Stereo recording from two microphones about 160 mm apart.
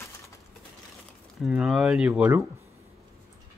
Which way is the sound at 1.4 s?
5° right (ahead or behind).